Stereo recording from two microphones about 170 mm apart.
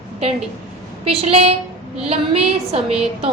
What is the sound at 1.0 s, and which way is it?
A woman's voice, 35° right (ahead or behind).